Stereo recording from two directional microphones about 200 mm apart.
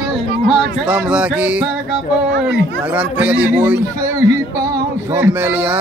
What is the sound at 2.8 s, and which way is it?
Speech, 5° right (ahead or behind).